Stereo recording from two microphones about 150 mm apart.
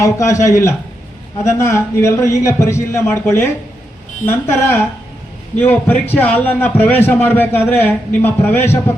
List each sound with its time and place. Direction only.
0.0 s a man's voice: 20° left (ahead or behind)